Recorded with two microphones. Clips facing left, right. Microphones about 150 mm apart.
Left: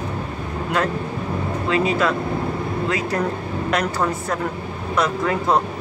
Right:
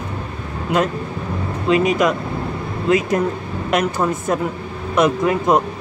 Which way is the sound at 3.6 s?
20° right (ahead or behind).